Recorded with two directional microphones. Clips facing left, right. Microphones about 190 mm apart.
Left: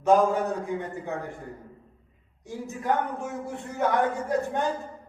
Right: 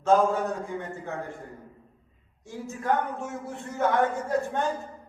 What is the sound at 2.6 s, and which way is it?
Speech, 15° left (ahead or behind).